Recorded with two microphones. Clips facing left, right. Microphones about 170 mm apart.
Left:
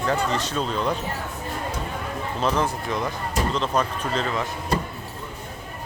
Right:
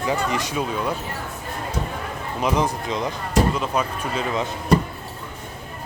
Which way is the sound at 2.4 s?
15° right (ahead or behind).